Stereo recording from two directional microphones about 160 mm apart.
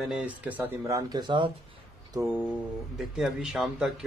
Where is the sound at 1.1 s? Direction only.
30° right (ahead or behind).